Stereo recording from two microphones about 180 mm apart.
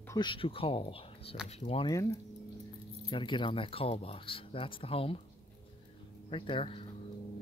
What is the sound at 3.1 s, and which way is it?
Speech, 25° left (ahead or behind).